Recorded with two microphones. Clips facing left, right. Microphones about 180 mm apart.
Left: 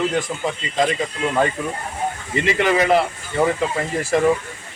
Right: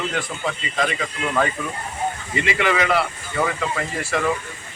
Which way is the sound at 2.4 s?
40° left (ahead or behind).